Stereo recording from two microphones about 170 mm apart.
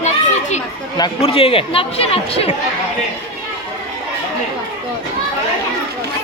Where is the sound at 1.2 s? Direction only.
35° left (ahead or behind).